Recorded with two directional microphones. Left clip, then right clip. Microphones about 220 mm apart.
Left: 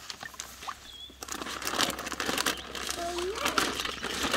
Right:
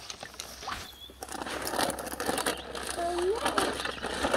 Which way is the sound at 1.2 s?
15° left (ahead or behind).